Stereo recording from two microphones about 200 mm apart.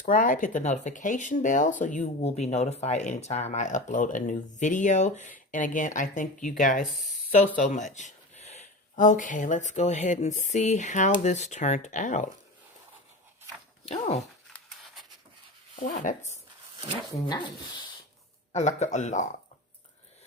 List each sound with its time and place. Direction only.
0.0 s speech: 40° left (ahead or behind)
13.8 s speech: 35° left (ahead or behind)
14.5 s a sound: centre (ahead or behind)
15.7 s speech: 40° left (ahead or behind)
17.2 s speech: 20° left (ahead or behind)
18.5 s speech: 35° left (ahead or behind)